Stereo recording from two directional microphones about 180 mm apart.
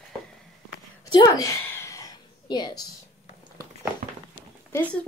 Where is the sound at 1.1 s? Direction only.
20° left (ahead or behind).